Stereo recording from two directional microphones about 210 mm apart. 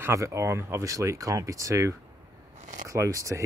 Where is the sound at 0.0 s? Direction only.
15° right (ahead or behind).